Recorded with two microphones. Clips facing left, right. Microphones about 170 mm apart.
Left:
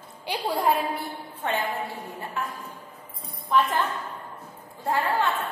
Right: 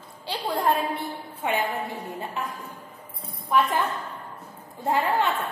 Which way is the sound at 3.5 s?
10° right (ahead or behind).